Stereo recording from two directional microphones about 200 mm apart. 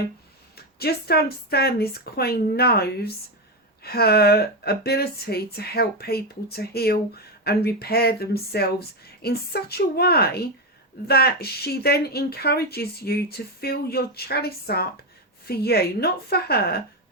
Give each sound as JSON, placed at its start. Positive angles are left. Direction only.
{"t": 0.5, "sound": "speech", "side_deg": 50}